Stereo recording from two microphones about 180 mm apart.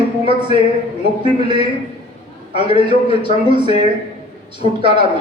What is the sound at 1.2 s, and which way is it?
Speech, 30° right (ahead or behind).